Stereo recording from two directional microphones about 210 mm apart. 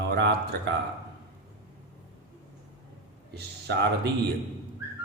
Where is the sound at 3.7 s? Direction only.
50° right (ahead or behind).